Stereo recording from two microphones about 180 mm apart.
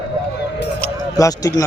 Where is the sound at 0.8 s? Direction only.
20° left (ahead or behind).